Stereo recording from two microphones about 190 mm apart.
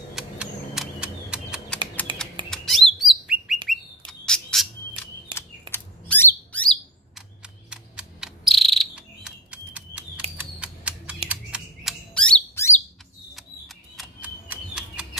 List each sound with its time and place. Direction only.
0.1 s typewriter: 5° right (ahead or behind)
2.1 s chirp: 25° right (ahead or behind)
2.5 s chirp: centre (ahead or behind)
3.6 s squawk: 5° left (ahead or behind)
7.7 s bird vocalization: 5° right (ahead or behind)
10.3 s typewriter: 5° right (ahead or behind)
11.2 s bird: 5° right (ahead or behind); by 12.7 s 15° left (ahead or behind)
13.3 s single-lens reflex camera: centre (ahead or behind)